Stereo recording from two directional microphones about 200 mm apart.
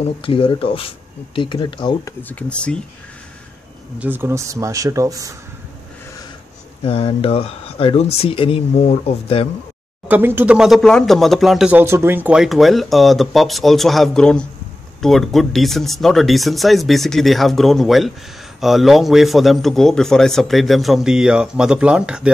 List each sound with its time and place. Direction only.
0.2 s speech: 25° left (ahead or behind)
2.2 s speech: 5° left (ahead or behind)
4.0 s speech: 10° right (ahead or behind)
6.8 s speech: 30° left (ahead or behind)
10.0 s speech: 10° right (ahead or behind)